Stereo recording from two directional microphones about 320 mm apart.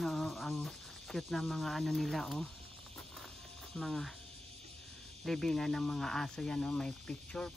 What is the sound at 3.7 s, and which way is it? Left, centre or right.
Speech, centre.